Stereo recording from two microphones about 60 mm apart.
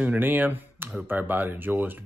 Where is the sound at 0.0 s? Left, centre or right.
Right.